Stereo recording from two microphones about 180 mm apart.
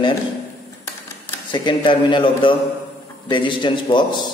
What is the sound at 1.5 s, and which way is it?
Speech, 25° left (ahead or behind).